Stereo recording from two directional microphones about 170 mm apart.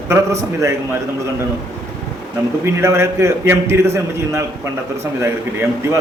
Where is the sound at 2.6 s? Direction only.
15° right (ahead or behind).